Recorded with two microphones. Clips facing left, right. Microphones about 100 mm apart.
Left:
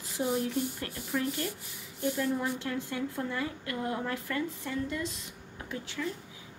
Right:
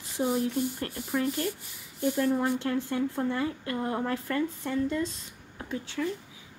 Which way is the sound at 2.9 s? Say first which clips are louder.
Right 5 dB; 25° right (ahead or behind).